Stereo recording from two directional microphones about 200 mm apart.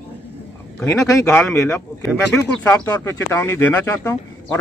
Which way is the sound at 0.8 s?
15° left (ahead or behind).